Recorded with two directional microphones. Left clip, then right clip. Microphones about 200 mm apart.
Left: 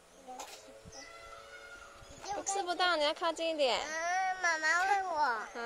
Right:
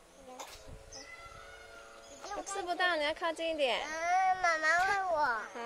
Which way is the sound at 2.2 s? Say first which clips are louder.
Left 3 dB; centre (ahead or behind).